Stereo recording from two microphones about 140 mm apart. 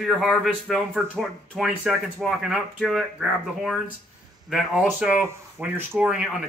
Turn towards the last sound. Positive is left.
turn(degrees=-5)  # may be behind; listen again after turning